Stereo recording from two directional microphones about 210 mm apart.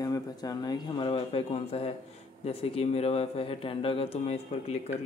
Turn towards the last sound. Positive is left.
turn(degrees=30)  # may be behind; listen again after turning